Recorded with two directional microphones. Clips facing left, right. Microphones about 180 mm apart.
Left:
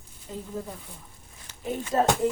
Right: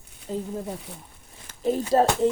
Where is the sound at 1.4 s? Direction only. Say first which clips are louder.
Right 8 dB; 35° right (ahead or behind).